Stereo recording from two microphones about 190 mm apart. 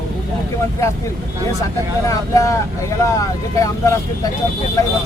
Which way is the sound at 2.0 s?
15° left (ahead or behind).